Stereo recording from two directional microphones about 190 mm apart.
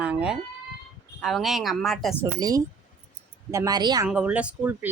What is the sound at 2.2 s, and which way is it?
Speech, 20° right (ahead or behind).